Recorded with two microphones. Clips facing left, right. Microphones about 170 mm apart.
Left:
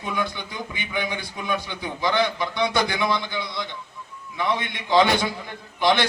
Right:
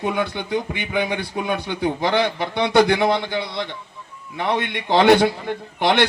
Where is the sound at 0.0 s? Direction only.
60° right (ahead or behind).